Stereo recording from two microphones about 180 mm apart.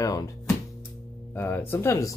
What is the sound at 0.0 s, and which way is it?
Speech, 20° left (ahead or behind).